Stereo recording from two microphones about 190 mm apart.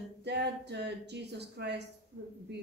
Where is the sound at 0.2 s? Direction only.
65° right (ahead or behind).